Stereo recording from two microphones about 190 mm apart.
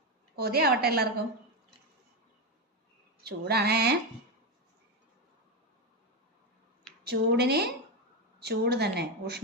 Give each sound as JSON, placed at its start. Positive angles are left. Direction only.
{"t": 0.3, "sound": "a woman's voice", "side_deg": -55}
{"t": 3.2, "sound": "a woman's voice", "side_deg": -60}
{"t": 7.0, "sound": "a woman's voice", "side_deg": -60}